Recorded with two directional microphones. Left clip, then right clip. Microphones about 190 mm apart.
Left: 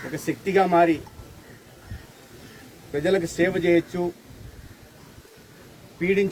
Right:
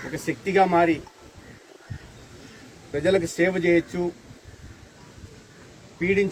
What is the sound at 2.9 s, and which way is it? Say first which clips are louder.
Speech: right 1 dB; centre (ahead or behind).